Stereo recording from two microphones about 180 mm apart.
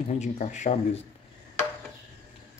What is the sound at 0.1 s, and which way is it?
Speech, 40° left (ahead or behind).